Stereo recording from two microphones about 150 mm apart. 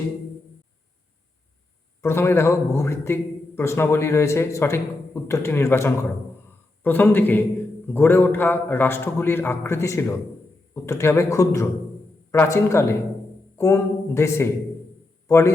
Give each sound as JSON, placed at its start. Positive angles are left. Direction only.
{"t": 2.0, "sound": "a man's voice", "side_deg": 15}